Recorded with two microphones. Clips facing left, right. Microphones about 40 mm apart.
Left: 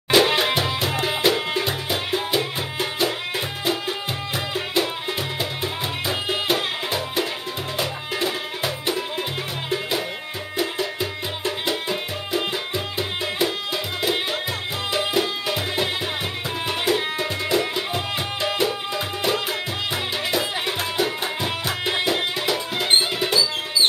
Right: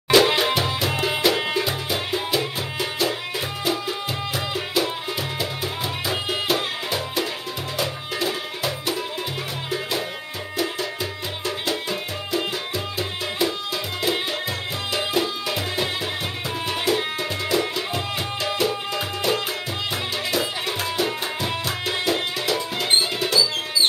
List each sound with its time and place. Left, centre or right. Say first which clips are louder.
0.1 s music: right 1 dB; centre
2.0 s music: left 2 dB; left
4.8 s music: even; centre
6.2 s music: left 2 dB; centre
9.7 s music: left 2 dB; centre
14.9 s music: left 1 dB; centre
20.3 s music: even; centre
21.8 s music: left 2 dB; left